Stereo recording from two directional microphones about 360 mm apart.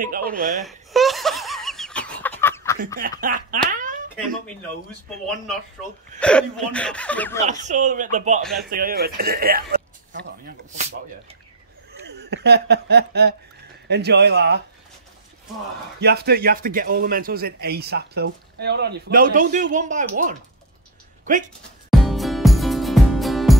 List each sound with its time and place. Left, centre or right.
0.0 s speech: right
0.7 s laughter: centre
3.0 s speech: right
6.1 s speech: centre
7.4 s speech: centre
11.9 s speech: right
16.0 s speech: right
22.0 s music: centre